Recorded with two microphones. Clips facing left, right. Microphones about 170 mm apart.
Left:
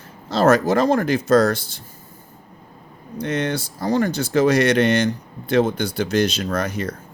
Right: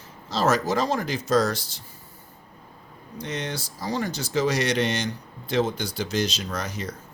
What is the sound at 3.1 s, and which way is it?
Speech, 55° left (ahead or behind).